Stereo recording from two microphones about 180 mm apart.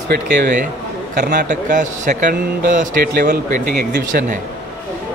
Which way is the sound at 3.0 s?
60° right (ahead or behind).